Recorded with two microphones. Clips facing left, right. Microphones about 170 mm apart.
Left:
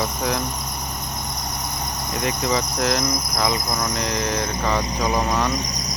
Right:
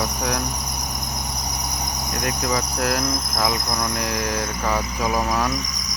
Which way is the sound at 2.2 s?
Centre (ahead or behind).